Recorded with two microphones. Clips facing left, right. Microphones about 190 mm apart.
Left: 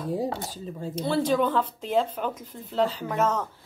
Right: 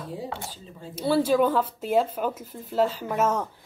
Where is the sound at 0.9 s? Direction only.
5° right (ahead or behind).